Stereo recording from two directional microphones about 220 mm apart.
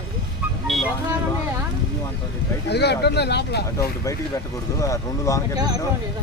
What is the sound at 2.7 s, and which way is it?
Speech, 50° left (ahead or behind).